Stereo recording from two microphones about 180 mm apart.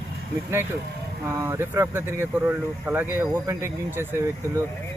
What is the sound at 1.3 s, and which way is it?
Speech, 15° right (ahead or behind).